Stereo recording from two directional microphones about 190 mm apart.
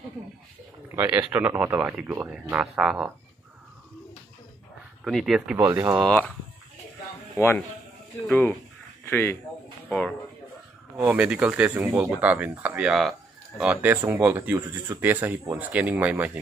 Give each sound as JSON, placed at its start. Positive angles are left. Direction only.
{"t": 0.9, "sound": "speech", "side_deg": -10}
{"t": 5.0, "sound": "speech", "side_deg": 0}
{"t": 5.6, "sound": "speech", "side_deg": -15}
{"t": 5.9, "sound": "speech", "side_deg": 5}
{"t": 7.3, "sound": "speech", "side_deg": 10}
{"t": 9.0, "sound": "speech", "side_deg": 10}
{"t": 11.0, "sound": "speech", "side_deg": -15}